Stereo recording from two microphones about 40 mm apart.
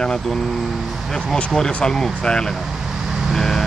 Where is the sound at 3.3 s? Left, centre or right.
Centre.